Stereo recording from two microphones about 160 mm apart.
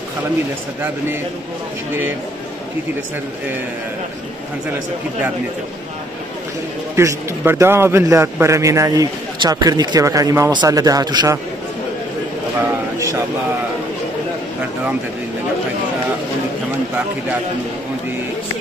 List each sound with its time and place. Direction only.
7.0 s a man's voice: 20° right (ahead or behind)